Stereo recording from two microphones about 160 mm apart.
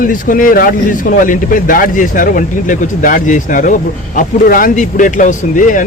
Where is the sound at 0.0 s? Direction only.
60° left (ahead or behind).